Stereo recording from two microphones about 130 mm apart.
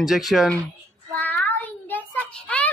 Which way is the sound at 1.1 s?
15° left (ahead or behind).